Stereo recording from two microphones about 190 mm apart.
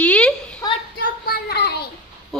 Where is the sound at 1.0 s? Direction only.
55° left (ahead or behind).